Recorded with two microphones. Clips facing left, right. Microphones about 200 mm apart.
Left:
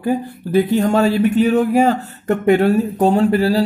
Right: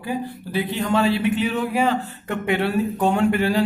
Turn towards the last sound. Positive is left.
turn(degrees=35)  # may be behind; listen again after turning